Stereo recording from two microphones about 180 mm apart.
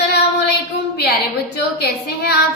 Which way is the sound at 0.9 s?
60° left (ahead or behind).